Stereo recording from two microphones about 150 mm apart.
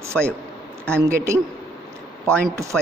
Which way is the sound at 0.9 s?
20° right (ahead or behind).